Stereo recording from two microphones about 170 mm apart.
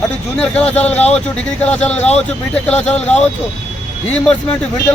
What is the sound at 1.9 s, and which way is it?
Speech, 40° left (ahead or behind).